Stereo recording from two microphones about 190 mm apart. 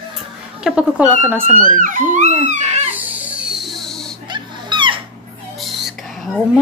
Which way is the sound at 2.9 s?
10° right (ahead or behind).